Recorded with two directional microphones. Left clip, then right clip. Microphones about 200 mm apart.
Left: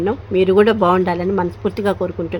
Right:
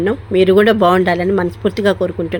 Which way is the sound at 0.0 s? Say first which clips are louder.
Right 3 dB; 5° right (ahead or behind).